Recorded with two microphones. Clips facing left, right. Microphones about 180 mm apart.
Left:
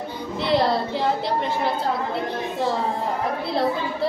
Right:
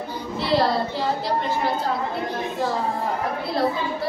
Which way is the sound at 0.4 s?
20° left (ahead or behind).